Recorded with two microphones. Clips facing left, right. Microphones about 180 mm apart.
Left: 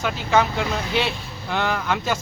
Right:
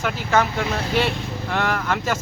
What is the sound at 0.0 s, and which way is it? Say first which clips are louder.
Speech: even; centre (ahead or behind).